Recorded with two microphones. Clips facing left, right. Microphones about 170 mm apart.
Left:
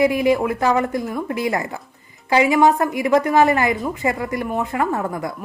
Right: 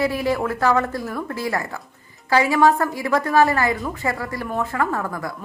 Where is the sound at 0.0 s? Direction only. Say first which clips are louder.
Left 5 dB; 15° left (ahead or behind).